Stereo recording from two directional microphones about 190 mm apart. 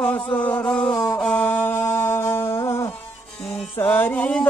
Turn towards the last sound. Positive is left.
turn(degrees=5)  # may be behind; listen again after turning